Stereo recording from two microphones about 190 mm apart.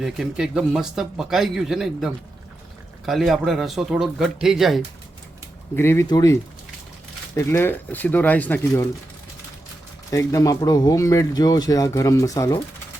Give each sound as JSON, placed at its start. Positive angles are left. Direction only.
{"t": 0.0, "sound": "speech", "side_deg": -5}
{"t": 3.1, "sound": "speech", "side_deg": 0}
{"t": 5.7, "sound": "speech", "side_deg": 15}
{"t": 10.1, "sound": "speech", "side_deg": 15}